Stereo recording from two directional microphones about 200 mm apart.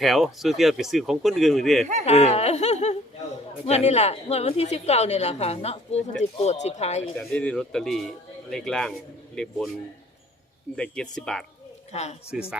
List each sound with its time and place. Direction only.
0.0 s speech: centre (ahead or behind)
2.0 s a woman's voice: 30° left (ahead or behind)
7.2 s speech: 5° left (ahead or behind)
10.8 s speech: 5° left (ahead or behind)
11.9 s speech: 35° left (ahead or behind)
12.3 s speech: 5° right (ahead or behind)